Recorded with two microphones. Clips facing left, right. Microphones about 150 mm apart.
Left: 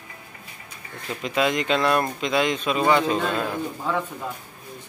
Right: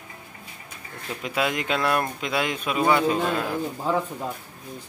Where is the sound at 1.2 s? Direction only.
10° right (ahead or behind).